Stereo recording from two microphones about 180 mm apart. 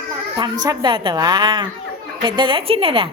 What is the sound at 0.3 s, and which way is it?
A woman's voice, 25° right (ahead or behind).